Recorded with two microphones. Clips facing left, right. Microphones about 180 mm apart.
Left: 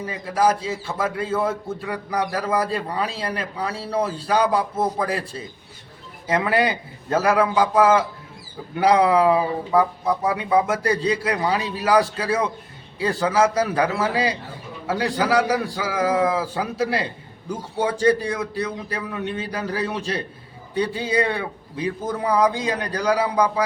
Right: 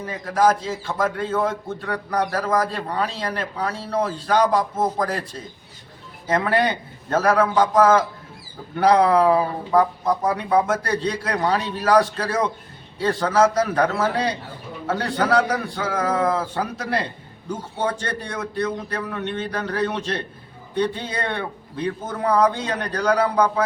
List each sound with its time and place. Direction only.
0.0 s a man's voice: 10° left (ahead or behind)